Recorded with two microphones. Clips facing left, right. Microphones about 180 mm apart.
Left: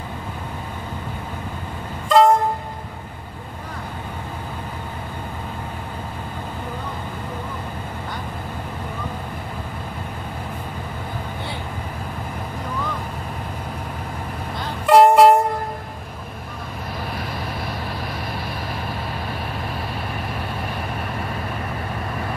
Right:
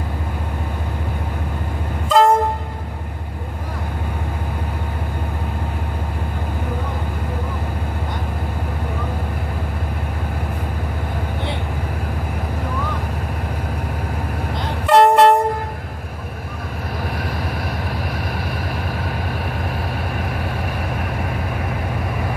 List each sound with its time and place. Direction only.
2.0 s train: centre (ahead or behind)
14.9 s train: centre (ahead or behind)